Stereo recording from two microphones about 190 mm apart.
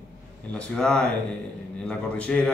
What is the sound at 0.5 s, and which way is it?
Speech, 5° left (ahead or behind).